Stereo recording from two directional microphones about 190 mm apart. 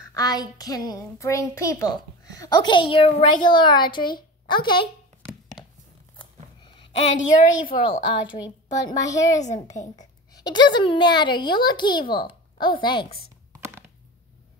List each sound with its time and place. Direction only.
0.1 s a woman's voice: 20° left (ahead or behind)
6.8 s a woman's voice: 35° left (ahead or behind)
8.4 s a woman's voice: 20° left (ahead or behind)
9.4 s a woman's voice: 40° left (ahead or behind)
9.9 s a woman's voice: 20° left (ahead or behind)
13.6 s computer keyboard: 10° right (ahead or behind)